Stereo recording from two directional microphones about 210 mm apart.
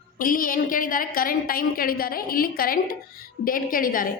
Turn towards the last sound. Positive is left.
turn(degrees=40)  # may be behind; listen again after turning